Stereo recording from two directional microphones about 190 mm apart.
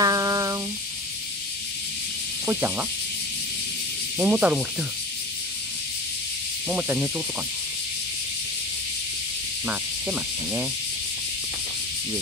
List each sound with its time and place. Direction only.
0.0 s a sound: 20° right (ahead or behind)
2.4 s speech: 10° right (ahead or behind)
4.2 s speech: 5° right (ahead or behind)
6.7 s speech: 10° right (ahead or behind)
9.7 s speech: 10° right (ahead or behind)